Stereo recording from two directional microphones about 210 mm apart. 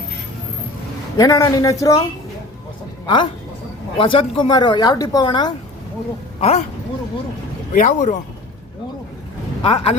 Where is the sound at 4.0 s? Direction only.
25° left (ahead or behind).